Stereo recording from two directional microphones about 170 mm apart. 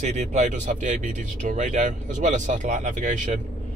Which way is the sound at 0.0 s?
40° right (ahead or behind).